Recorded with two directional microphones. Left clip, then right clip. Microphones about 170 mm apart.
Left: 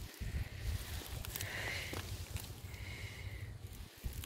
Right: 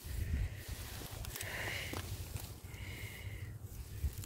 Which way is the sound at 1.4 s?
10° right (ahead or behind).